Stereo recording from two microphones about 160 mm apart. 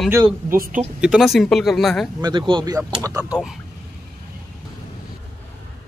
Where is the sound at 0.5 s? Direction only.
60° right (ahead or behind).